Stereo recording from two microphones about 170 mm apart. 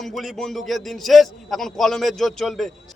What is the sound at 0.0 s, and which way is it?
A man's voice, centre (ahead or behind).